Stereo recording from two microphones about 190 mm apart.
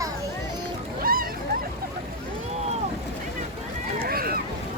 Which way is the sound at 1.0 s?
50° right (ahead or behind).